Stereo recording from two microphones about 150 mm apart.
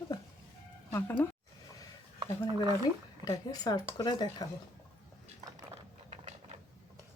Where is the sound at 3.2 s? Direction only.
25° left (ahead or behind).